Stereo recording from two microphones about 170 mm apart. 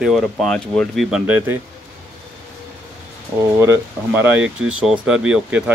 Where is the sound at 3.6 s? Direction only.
15° right (ahead or behind).